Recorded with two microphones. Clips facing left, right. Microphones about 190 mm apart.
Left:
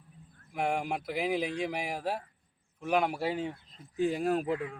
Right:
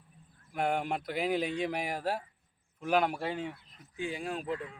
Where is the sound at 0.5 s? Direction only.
Centre (ahead or behind).